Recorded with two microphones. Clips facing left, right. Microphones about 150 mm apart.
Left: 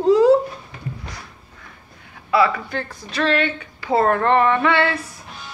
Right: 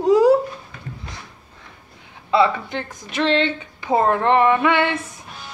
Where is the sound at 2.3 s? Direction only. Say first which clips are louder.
Right 1 dB; 25° right (ahead or behind).